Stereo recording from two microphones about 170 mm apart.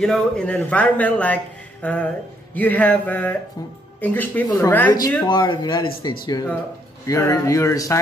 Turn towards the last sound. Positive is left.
turn(degrees=20)  # may be behind; listen again after turning